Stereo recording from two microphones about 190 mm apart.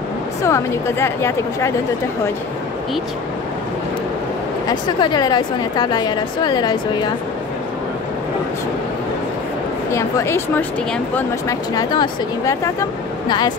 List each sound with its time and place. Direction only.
0.4 s speech: 15° left (ahead or behind)
4.6 s a woman's voice: 20° left (ahead or behind)
9.9 s speech: 15° left (ahead or behind)